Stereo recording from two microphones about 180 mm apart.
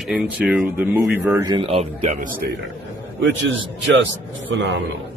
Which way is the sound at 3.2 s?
90° right.